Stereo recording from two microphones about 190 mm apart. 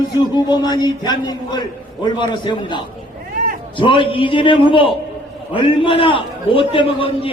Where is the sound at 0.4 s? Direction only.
20° left (ahead or behind).